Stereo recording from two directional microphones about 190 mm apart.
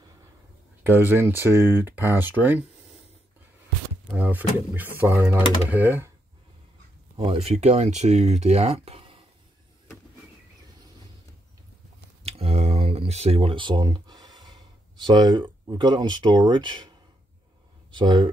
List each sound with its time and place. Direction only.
0.8 s speech: 10° right (ahead or behind)
4.1 s speech: 10° right (ahead or behind)
7.2 s speech: 30° right (ahead or behind)
12.2 s a sound: 30° right (ahead or behind)
17.9 s speech: 25° right (ahead or behind)